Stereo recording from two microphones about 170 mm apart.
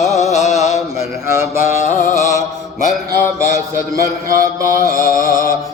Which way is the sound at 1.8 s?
45° left (ahead or behind).